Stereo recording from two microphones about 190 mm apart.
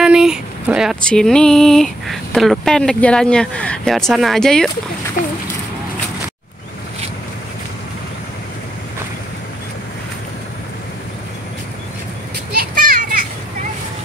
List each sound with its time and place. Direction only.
0.0 s speech: 5° right (ahead or behind)
12.5 s children playing: 45° right (ahead or behind)